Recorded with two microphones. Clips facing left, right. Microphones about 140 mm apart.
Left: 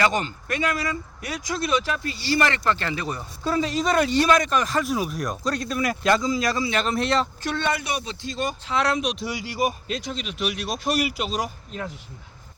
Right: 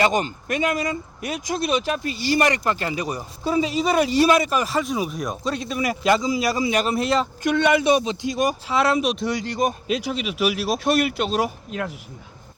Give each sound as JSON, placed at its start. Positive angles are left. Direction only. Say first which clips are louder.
{"t": 0.0, "sound": "speech", "louder": "right 3 dB", "side_deg": -20}
{"t": 9.8, "sound": "speech", "louder": "right 6 dB", "side_deg": -5}